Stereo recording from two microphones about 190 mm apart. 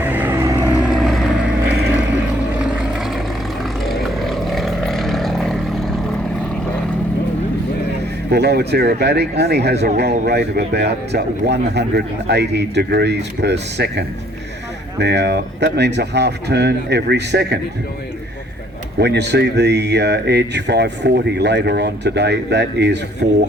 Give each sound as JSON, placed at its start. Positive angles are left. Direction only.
{"t": 0.0, "sound": "vehicle", "side_deg": -10}
{"t": 0.8, "sound": "vehicle", "side_deg": 0}
{"t": 2.9, "sound": "vehicle", "side_deg": 0}
{"t": 8.3, "sound": "a man's voice", "side_deg": -60}
{"t": 18.9, "sound": "a man's voice", "side_deg": -60}